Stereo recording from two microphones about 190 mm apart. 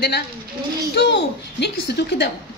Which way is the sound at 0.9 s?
60° left (ahead or behind).